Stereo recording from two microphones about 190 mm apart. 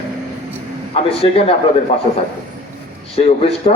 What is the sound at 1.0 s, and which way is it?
Speech, 30° left (ahead or behind).